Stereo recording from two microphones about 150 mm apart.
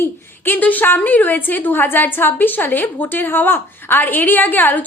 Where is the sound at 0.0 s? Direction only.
15° left (ahead or behind).